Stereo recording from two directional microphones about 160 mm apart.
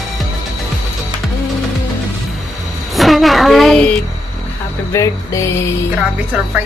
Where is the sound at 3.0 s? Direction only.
Centre (ahead or behind).